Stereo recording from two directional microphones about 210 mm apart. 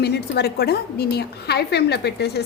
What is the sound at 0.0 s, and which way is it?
A woman's voice, 50° left (ahead or behind).